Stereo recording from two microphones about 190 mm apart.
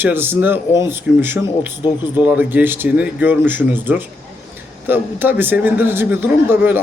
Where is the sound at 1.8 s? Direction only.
25° left (ahead or behind).